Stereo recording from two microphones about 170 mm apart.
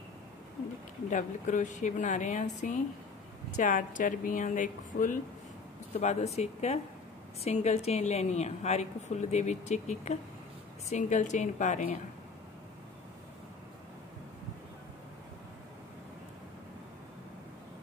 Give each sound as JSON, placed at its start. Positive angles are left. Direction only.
{"t": 1.1, "sound": "a woman's voice", "side_deg": 50}